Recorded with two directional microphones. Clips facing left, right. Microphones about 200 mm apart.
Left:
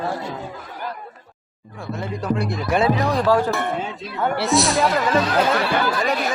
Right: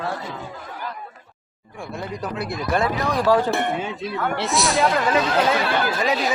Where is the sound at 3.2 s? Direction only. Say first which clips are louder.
Right 3 dB; 15° right (ahead or behind).